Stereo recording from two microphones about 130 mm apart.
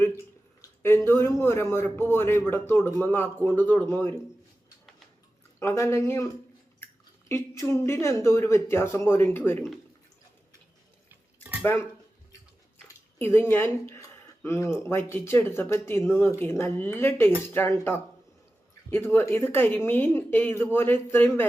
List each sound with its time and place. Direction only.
0.8 s speech: 20° left (ahead or behind)
5.5 s speech: 20° left (ahead or behind)
6.8 s a sound: 15° left (ahead or behind)
7.3 s speech: 20° left (ahead or behind)
13.1 s speech: 15° left (ahead or behind)